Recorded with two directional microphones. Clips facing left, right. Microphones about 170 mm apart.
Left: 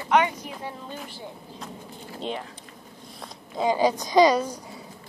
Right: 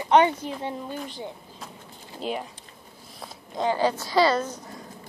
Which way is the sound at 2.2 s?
10° right (ahead or behind).